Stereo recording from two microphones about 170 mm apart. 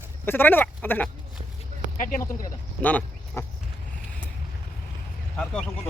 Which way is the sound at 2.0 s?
50° left (ahead or behind).